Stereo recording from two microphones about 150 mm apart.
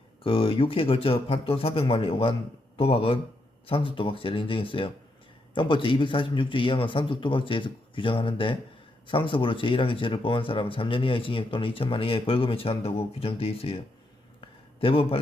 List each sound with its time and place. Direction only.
0.2 s speech: 35° left (ahead or behind)